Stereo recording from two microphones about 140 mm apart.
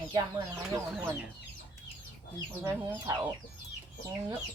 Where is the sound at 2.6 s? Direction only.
15° right (ahead or behind).